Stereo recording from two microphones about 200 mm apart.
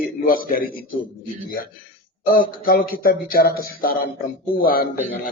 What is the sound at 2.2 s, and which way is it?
A man's voice, 45° left (ahead or behind).